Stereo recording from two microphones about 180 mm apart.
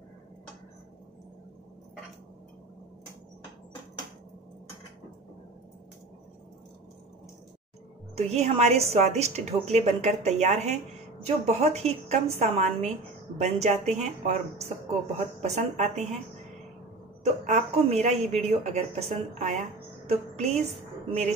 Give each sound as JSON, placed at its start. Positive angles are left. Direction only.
{"t": 8.2, "sound": "a woman's voice", "side_deg": -35}
{"t": 17.2, "sound": "a woman's voice", "side_deg": -40}